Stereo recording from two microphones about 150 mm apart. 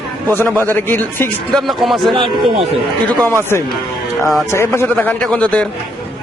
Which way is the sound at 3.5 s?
15° left (ahead or behind).